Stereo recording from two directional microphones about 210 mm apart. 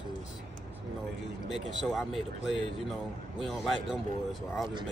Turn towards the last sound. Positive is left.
turn(degrees=0)  # may be behind; listen again after turning